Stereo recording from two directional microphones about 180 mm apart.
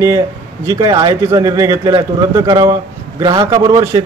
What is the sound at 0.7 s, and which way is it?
A man's voice, 20° right (ahead or behind).